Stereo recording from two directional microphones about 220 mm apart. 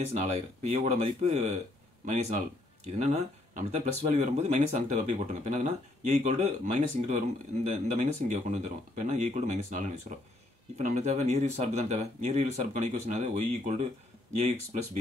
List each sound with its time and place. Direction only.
0.2 s speech: 30° right (ahead or behind)